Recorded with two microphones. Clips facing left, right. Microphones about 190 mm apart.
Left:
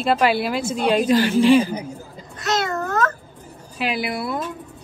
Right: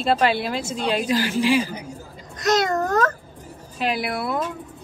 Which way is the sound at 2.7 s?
35° right (ahead or behind).